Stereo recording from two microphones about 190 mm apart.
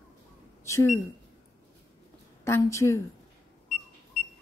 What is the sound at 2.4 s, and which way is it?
Speech, 15° left (ahead or behind).